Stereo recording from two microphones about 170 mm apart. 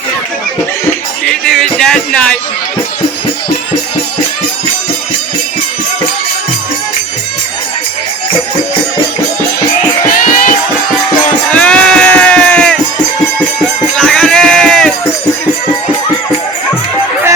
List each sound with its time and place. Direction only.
1.3 s music: centre (ahead or behind)
10.1 s music: 50° left (ahead or behind)
11.5 s sheep: 5° left (ahead or behind)